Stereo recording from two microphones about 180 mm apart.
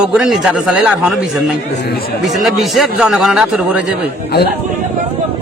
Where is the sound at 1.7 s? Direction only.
60° left (ahead or behind).